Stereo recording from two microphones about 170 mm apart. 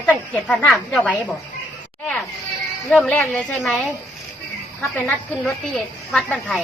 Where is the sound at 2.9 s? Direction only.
5° left (ahead or behind).